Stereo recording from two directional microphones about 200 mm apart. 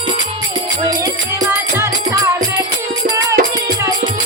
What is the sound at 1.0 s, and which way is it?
Music, 15° right (ahead or behind).